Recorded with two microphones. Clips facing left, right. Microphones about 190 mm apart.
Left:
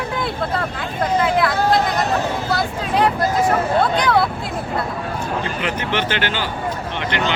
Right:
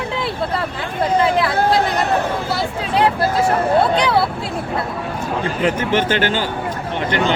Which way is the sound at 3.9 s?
30° right (ahead or behind).